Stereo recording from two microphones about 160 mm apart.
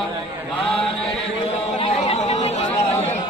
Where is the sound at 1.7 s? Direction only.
40° left (ahead or behind).